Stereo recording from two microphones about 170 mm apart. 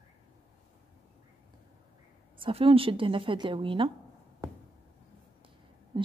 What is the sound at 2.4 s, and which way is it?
A woman's voice, 35° right (ahead or behind).